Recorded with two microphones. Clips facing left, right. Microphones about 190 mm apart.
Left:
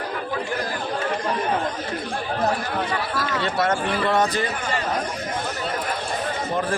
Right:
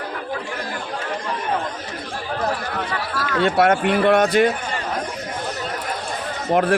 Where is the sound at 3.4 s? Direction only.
60° right (ahead or behind).